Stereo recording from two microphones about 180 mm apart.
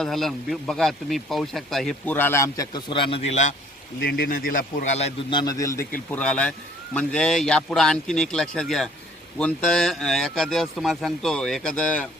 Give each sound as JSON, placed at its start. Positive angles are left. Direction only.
{"t": 0.0, "sound": "speech", "side_deg": 0}
{"t": 4.0, "sound": "a man's voice", "side_deg": 55}
{"t": 5.4, "sound": "speech", "side_deg": 20}
{"t": 6.1, "sound": "speech", "side_deg": 5}